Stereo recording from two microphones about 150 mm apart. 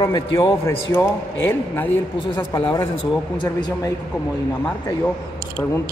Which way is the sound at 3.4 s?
30° left (ahead or behind).